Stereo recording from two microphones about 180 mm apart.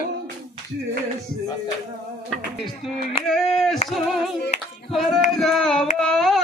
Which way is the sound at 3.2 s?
5° left (ahead or behind).